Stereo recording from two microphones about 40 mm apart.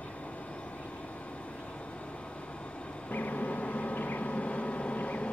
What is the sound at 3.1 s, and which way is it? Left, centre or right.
Vehicle, left.